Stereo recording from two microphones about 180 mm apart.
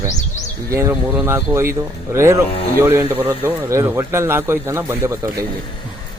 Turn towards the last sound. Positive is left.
turn(degrees=-15)  # may be behind; listen again after turning